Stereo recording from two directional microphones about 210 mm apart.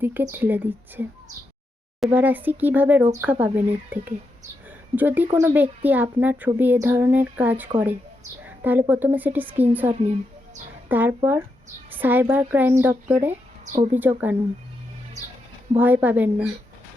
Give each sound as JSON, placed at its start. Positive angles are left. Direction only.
{"t": 0.0, "sound": "speech", "side_deg": -10}
{"t": 10.8, "sound": "speech", "side_deg": -10}
{"t": 13.7, "sound": "speech", "side_deg": -35}
{"t": 13.9, "sound": "speech", "side_deg": -10}
{"t": 15.7, "sound": "speech", "side_deg": -10}